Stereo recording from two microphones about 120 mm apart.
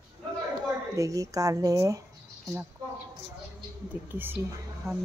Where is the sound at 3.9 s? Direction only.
15° right (ahead or behind).